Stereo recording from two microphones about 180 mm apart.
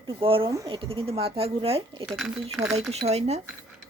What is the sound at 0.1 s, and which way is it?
Speech, 30° right (ahead or behind).